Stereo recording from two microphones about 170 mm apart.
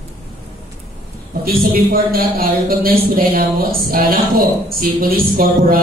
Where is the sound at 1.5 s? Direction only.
60° right (ahead or behind).